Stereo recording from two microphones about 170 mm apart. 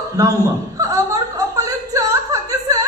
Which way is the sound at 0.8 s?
20° right (ahead or behind).